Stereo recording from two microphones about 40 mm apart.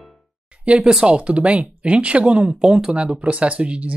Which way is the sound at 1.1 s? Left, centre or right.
Right.